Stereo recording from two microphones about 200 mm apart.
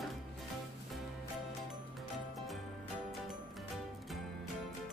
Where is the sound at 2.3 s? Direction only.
Centre (ahead or behind).